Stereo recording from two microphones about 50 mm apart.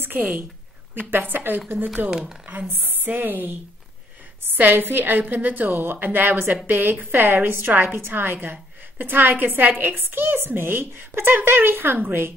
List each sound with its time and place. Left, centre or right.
0.0 s a woman's voice: right
2.0 s speech: centre
2.7 s speech: right
4.6 s a woman's voice: right